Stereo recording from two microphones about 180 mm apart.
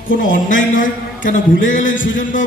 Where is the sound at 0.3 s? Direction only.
45° left (ahead or behind).